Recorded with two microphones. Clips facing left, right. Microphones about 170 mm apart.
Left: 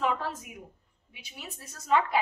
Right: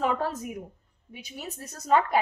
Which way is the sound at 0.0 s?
45° right (ahead or behind).